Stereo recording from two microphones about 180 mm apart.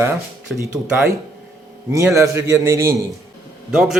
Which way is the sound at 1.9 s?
15° right (ahead or behind).